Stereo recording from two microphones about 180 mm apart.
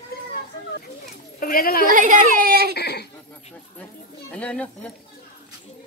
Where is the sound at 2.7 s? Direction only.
65° left (ahead or behind).